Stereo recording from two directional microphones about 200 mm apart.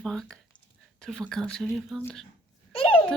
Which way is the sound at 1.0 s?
5° left (ahead or behind).